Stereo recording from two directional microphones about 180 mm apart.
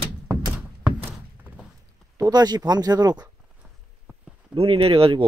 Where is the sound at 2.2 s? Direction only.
20° right (ahead or behind).